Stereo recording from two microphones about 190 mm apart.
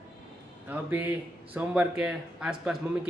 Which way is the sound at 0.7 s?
10° right (ahead or behind).